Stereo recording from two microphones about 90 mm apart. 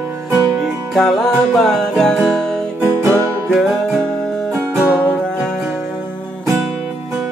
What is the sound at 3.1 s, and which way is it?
Music, 25° right (ahead or behind).